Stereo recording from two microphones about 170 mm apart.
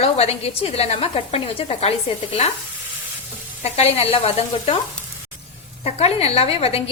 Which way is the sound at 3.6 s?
35° left (ahead or behind).